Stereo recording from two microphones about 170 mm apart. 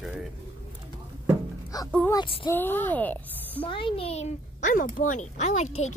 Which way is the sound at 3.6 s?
30° left (ahead or behind).